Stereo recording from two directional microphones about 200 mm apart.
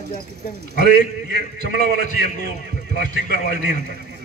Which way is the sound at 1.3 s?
55° right (ahead or behind).